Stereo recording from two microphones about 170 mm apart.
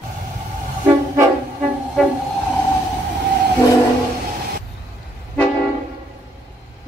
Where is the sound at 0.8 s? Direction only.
15° right (ahead or behind).